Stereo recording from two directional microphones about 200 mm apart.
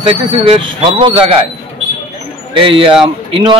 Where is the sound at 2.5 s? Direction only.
25° right (ahead or behind).